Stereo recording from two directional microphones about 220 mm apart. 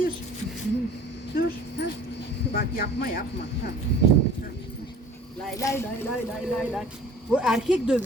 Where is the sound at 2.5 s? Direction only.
40° left (ahead or behind).